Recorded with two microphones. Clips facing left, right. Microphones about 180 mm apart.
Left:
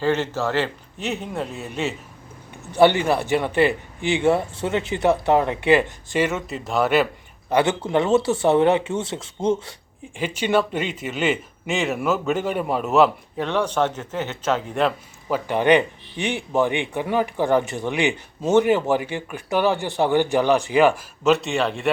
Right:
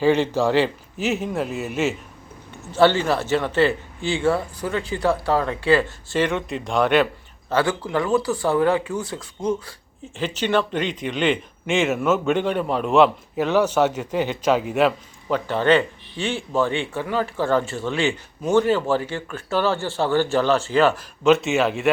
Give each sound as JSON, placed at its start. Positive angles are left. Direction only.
{"t": 0.0, "sound": "speech", "side_deg": -15}
{"t": 0.9, "sound": "a man's voice", "side_deg": 0}
{"t": 2.7, "sound": "a man's voice", "side_deg": 15}
{"t": 7.5, "sound": "speech", "side_deg": 20}
{"t": 10.2, "sound": "a man's voice", "side_deg": 10}
{"t": 15.3, "sound": "a man's voice", "side_deg": 15}
{"t": 21.2, "sound": "a man's voice", "side_deg": 0}